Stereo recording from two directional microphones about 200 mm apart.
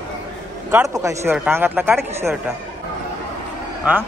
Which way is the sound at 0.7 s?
15° right (ahead or behind).